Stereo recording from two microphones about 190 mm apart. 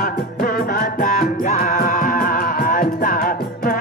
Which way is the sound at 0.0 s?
50° left (ahead or behind).